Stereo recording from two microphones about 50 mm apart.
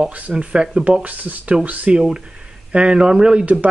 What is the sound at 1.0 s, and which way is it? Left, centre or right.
Speech, right.